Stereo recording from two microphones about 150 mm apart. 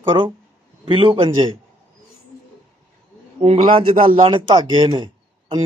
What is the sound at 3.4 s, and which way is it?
Speech, 40° right (ahead or behind).